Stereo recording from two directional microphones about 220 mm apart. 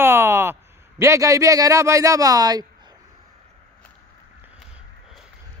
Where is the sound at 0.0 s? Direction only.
10° right (ahead or behind).